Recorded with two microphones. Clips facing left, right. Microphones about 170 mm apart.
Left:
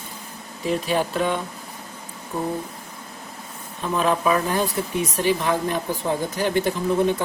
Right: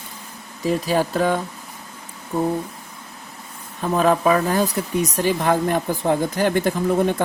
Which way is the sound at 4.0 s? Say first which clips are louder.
Right 3 dB; 40° right (ahead or behind).